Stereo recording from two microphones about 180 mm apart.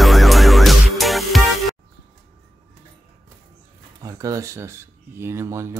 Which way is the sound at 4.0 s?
20° right (ahead or behind).